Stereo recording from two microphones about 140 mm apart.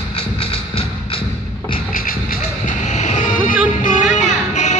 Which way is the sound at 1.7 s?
90° left.